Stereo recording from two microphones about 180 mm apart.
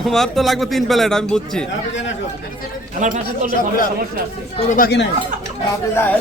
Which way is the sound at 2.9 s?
45° right (ahead or behind).